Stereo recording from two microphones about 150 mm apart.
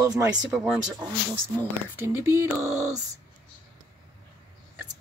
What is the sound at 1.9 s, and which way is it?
Speech, 15° right (ahead or behind).